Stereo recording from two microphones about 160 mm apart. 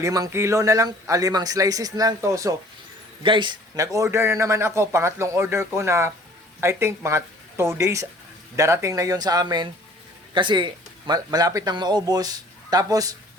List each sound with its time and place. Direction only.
0.0 s a man's voice: 20° right (ahead or behind)